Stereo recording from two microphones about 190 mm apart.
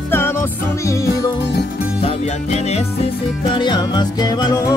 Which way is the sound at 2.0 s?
35° left (ahead or behind).